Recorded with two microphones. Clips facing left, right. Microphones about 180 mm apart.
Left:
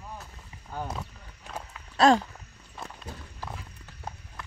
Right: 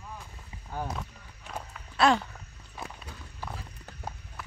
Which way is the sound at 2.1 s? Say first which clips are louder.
Left 4 dB; 40° left (ahead or behind).